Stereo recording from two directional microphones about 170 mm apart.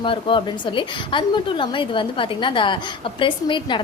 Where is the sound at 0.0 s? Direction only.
30° left (ahead or behind).